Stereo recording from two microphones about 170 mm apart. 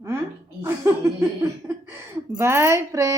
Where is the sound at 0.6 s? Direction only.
15° right (ahead or behind).